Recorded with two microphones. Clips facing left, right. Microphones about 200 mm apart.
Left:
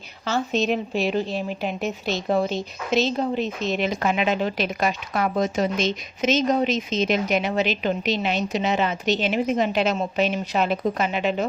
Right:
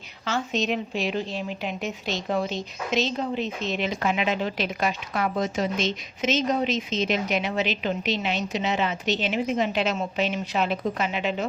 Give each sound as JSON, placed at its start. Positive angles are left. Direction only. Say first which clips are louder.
{"t": 0.3, "sound": "a woman's voice", "louder": "left 3 dB", "side_deg": 35}